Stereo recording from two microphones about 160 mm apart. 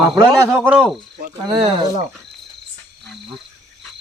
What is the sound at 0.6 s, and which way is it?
Speech, 5° right (ahead or behind).